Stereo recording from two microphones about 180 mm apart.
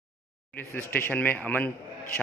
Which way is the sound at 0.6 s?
10° left (ahead or behind).